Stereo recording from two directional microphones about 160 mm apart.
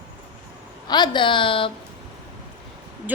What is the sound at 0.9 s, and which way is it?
Speech, 25° left (ahead or behind).